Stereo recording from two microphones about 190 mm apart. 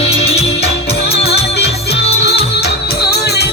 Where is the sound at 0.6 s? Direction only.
60° left (ahead or behind).